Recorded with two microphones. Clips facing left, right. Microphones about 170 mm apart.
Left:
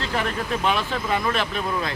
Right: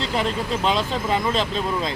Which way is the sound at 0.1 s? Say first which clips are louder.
Right 1 dB; 20° right (ahead or behind).